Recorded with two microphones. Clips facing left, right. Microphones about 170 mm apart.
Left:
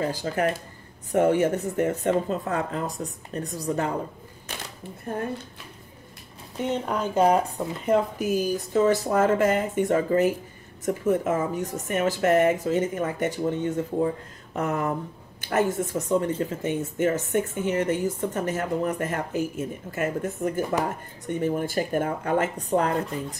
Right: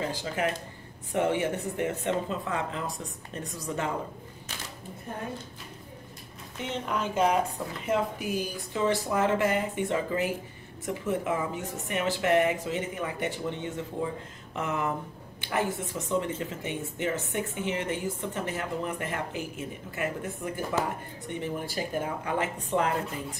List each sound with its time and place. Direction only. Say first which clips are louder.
0.0 s speech: left 5 dB; 40° left (ahead or behind)
6.5 s speech: left 5 dB; 40° left (ahead or behind)